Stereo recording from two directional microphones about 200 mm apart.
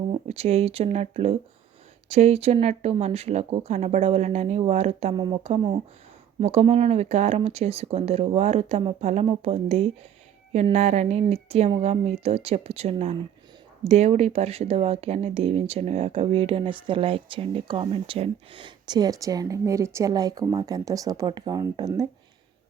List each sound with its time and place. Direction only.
0.3 s speech: 30° right (ahead or behind)